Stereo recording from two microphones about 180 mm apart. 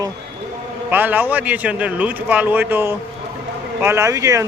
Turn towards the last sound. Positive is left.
turn(degrees=-15)  # may be behind; listen again after turning